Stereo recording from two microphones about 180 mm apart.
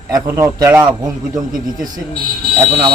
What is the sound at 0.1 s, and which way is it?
Speech, 15° right (ahead or behind).